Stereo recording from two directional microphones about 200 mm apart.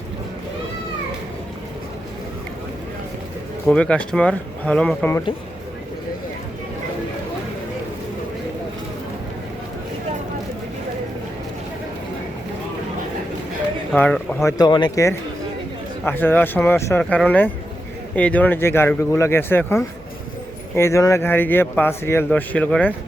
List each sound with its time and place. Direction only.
3.7 s speech: 5° left (ahead or behind)
13.9 s speech: 5° left (ahead or behind)
14.6 s speech: 20° left (ahead or behind)